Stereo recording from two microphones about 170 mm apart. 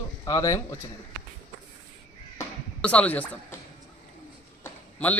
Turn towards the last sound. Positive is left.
turn(degrees=10)  # may be behind; listen again after turning